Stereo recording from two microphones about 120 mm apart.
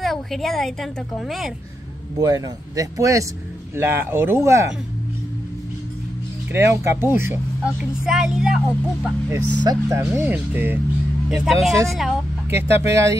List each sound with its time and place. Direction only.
0.0 s speech: centre (ahead or behind)
2.1 s speech: 30° right (ahead or behind)
6.5 s speech: 20° right (ahead or behind)
7.6 s speech: 5° right (ahead or behind)
9.6 s speech: 35° right (ahead or behind)
9.9 s speech: 15° right (ahead or behind)
11.2 s speech: 5° right (ahead or behind)
12.4 s speech: 20° right (ahead or behind)